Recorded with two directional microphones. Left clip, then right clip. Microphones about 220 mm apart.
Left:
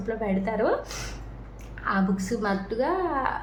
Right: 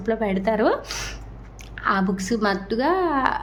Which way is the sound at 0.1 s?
45° right (ahead or behind).